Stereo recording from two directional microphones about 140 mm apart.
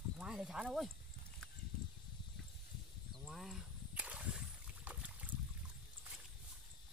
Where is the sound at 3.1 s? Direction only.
Centre (ahead or behind).